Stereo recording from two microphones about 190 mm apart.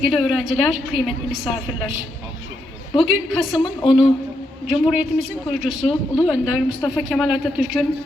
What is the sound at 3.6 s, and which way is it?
Speech, 25° left (ahead or behind).